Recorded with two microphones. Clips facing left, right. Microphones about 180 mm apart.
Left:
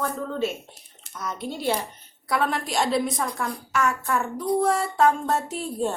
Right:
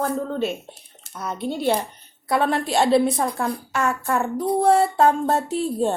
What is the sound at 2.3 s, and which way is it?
A woman's voice, 30° right (ahead or behind).